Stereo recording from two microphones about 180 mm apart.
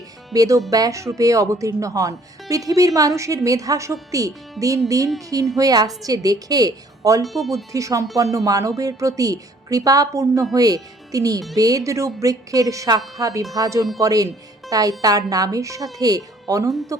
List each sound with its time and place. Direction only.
0.3 s speech: 20° right (ahead or behind)
5.5 s speech: 20° right (ahead or behind)
7.3 s speech: centre (ahead or behind)
7.5 s speech: 20° right (ahead or behind)